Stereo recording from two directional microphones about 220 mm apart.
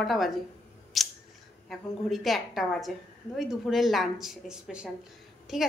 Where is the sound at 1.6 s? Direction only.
Centre (ahead or behind).